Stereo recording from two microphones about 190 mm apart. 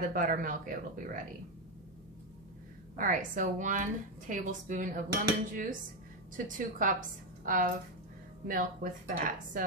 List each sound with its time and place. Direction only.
0.0 s a woman's voice: 45° right (ahead or behind)
3.0 s a woman's voice: 45° right (ahead or behind)